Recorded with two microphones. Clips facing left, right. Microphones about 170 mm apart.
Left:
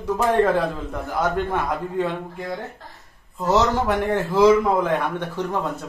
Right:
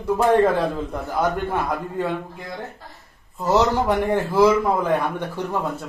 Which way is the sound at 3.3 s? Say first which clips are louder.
Right 1 dB; 10° right (ahead or behind).